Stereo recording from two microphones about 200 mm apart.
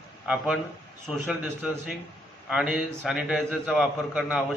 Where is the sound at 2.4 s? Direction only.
5° right (ahead or behind).